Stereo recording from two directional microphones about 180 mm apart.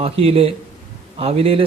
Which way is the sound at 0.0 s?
35° right (ahead or behind).